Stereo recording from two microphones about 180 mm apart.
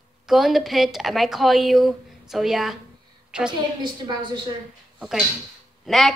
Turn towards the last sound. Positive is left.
turn(degrees=0)  # may be behind; listen again after turning